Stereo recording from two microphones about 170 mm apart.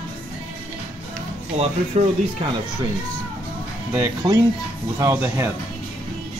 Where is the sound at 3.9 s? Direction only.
20° right (ahead or behind).